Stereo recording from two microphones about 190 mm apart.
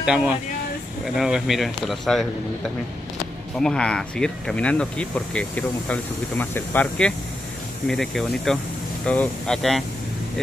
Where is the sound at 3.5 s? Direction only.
5° left (ahead or behind).